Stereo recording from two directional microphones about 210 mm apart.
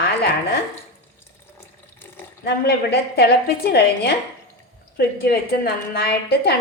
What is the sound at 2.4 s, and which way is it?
A woman's voice, 50° left (ahead or behind).